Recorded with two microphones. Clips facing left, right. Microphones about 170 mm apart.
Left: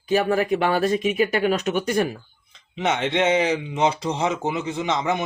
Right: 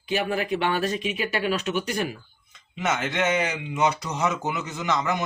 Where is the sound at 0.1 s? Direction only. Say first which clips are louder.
Left 5 dB; 40° left (ahead or behind).